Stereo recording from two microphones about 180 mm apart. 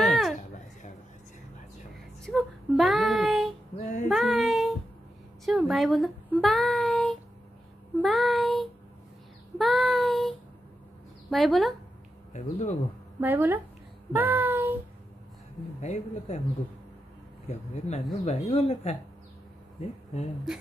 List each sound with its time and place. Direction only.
0.0 s a sound: centre (ahead or behind)
2.2 s child singing: centre (ahead or behind)
3.7 s female singing: 45° left (ahead or behind)
4.1 s child singing: centre (ahead or behind)
5.4 s a child's voice: centre (ahead or behind)
8.0 s child singing: centre (ahead or behind)
11.2 s speech: centre (ahead or behind)
12.3 s speech: 40° left (ahead or behind)
13.2 s speech: 10° right (ahead or behind)
14.1 s child singing: 10° right (ahead or behind)
15.8 s speech: 40° left (ahead or behind)
17.5 s speech: 40° left (ahead or behind)